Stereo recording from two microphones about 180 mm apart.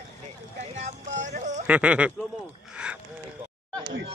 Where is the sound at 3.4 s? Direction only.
35° right (ahead or behind).